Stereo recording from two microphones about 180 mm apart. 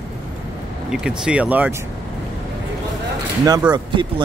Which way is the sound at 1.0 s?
5° right (ahead or behind).